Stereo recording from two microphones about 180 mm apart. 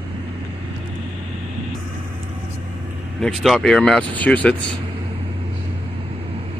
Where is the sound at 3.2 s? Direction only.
Centre (ahead or behind).